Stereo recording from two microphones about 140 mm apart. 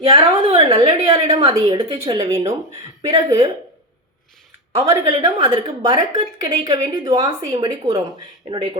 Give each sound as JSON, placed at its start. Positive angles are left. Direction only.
{"t": 0.1, "sound": "a woman's voice", "side_deg": -30}
{"t": 2.5, "sound": "a woman's voice", "side_deg": -25}
{"t": 4.8, "sound": "a woman's voice", "side_deg": -40}